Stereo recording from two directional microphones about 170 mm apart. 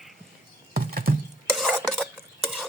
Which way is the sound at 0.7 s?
60° right (ahead or behind).